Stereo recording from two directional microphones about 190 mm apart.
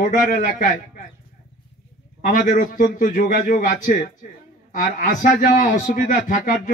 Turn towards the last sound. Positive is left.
turn(degrees=40)  # may be behind; listen again after turning